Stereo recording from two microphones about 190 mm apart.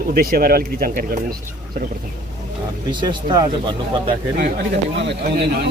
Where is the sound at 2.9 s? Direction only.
25° right (ahead or behind).